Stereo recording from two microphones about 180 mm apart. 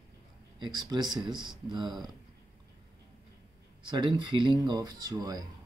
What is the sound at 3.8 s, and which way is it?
Speech, 25° right (ahead or behind).